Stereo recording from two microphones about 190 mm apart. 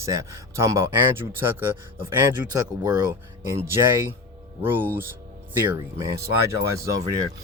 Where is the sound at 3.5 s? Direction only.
10° right (ahead or behind).